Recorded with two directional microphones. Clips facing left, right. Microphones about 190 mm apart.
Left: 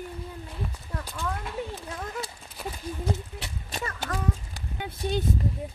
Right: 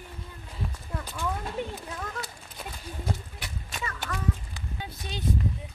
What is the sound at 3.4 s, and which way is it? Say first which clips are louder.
Clip-clop: left 2 dB; 35° left (ahead or behind).